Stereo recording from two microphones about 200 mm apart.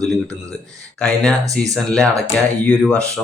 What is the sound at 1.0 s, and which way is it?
Speech, 5° left (ahead or behind).